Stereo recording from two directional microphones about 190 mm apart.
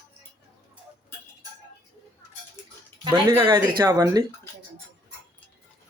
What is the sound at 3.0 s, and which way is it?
Speech, 20° right (ahead or behind).